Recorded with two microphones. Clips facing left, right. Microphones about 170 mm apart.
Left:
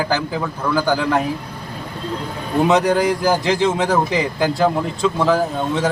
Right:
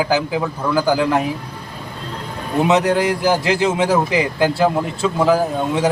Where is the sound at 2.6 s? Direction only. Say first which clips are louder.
Even; centre (ahead or behind).